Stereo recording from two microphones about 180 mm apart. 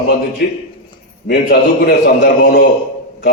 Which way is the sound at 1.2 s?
65° left (ahead or behind).